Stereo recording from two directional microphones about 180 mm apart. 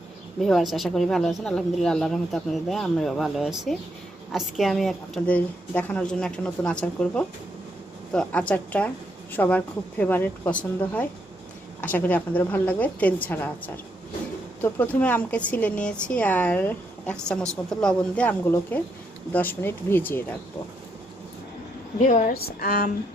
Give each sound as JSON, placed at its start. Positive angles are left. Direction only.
{"t": 0.4, "sound": "speech", "side_deg": 0}
{"t": 14.6, "sound": "speech", "side_deg": 10}
{"t": 21.9, "sound": "a woman's voice", "side_deg": 45}